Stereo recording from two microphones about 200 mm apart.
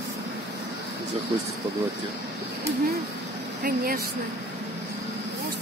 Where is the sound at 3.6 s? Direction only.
45° right (ahead or behind).